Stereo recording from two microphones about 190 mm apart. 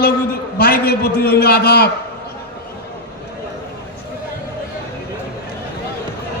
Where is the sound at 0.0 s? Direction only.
50° left (ahead or behind).